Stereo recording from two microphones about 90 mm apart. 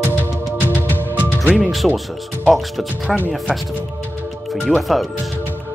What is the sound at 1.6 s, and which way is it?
Speech, centre (ahead or behind).